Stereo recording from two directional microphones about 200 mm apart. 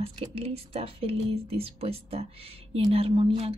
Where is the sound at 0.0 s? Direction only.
30° right (ahead or behind).